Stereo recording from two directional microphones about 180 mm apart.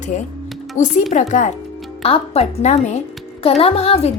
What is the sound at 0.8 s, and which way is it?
A woman's voice, 40° left (ahead or behind).